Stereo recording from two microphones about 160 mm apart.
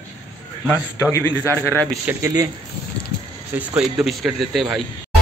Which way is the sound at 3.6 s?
5° right (ahead or behind).